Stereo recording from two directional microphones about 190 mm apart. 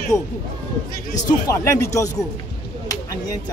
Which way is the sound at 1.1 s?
15° left (ahead or behind).